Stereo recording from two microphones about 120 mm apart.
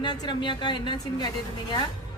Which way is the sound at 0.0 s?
40° left (ahead or behind).